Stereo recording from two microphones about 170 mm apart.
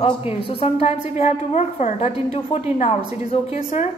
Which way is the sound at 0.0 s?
35° left (ahead or behind).